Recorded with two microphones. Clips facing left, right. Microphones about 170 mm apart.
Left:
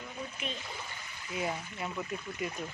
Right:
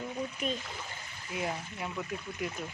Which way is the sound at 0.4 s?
40° right (ahead or behind).